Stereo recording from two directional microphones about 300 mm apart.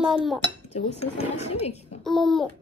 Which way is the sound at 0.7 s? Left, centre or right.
Left.